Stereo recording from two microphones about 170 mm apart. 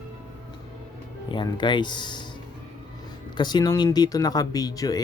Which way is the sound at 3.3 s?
25° left (ahead or behind).